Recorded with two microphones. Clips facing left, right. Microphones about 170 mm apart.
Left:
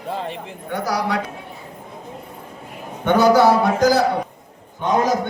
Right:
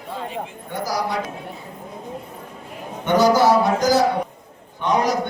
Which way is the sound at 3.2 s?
60° left (ahead or behind).